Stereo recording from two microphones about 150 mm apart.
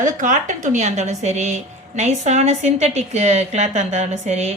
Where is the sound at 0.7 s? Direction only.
50° right (ahead or behind).